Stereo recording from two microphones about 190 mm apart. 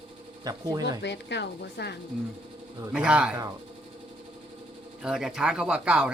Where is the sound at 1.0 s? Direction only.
65° left (ahead or behind).